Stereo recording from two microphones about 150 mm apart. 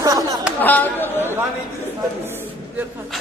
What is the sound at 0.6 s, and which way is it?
Speech, 10° left (ahead or behind).